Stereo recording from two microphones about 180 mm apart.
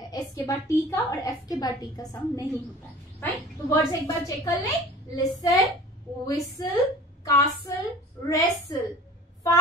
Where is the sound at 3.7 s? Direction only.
15° left (ahead or behind).